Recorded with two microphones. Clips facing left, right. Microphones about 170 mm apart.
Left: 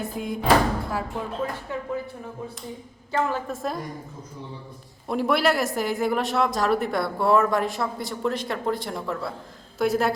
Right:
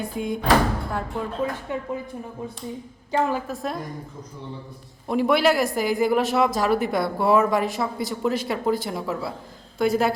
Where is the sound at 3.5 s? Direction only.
Centre (ahead or behind).